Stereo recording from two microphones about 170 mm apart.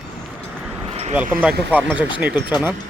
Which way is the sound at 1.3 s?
10° right (ahead or behind).